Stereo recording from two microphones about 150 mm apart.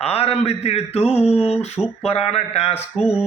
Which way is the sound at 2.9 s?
5° right (ahead or behind).